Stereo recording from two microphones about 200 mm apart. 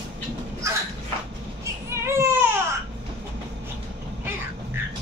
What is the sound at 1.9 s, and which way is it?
Baby cry, 15° right (ahead or behind).